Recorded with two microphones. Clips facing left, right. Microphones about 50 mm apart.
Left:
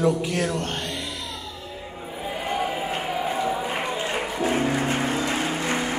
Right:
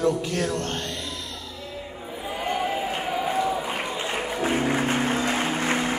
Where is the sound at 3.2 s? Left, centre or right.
Centre.